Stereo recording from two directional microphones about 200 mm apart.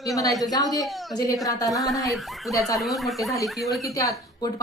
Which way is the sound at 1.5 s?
15° left (ahead or behind).